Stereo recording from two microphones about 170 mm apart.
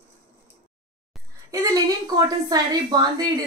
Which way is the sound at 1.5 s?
20° right (ahead or behind).